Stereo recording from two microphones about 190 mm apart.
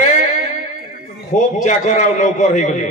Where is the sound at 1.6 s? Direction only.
40° left (ahead or behind).